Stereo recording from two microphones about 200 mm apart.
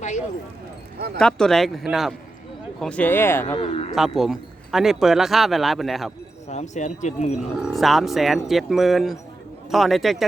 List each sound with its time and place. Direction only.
0.9 s speech: 55° right (ahead or behind)
1.2 s speech: 5° left (ahead or behind)
3.4 s speech: 30° left (ahead or behind)
3.9 s speech: centre (ahead or behind)
6.5 s speech: 35° left (ahead or behind)
7.3 s speech: centre (ahead or behind)